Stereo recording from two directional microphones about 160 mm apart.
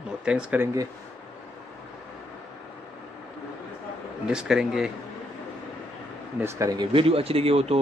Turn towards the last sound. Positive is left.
turn(degrees=-40)  # may be behind; listen again after turning